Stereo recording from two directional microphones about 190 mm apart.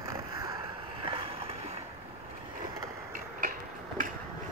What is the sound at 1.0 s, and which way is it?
Vehicle, 30° right (ahead or behind).